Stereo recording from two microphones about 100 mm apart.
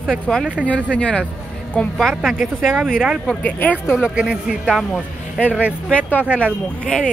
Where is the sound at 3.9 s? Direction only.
10° right (ahead or behind).